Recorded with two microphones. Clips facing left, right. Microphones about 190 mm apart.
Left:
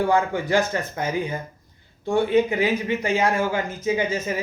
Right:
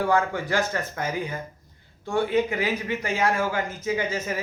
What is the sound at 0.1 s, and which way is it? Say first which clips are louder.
A man's voice: left 3 dB; 15° left (ahead or behind).